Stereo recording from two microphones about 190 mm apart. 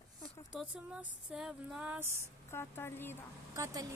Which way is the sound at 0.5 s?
5° right (ahead or behind).